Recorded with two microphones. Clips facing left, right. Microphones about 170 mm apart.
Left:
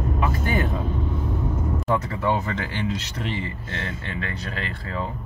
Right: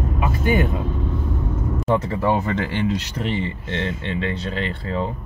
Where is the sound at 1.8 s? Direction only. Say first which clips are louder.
Right 4 dB; 30° right (ahead or behind).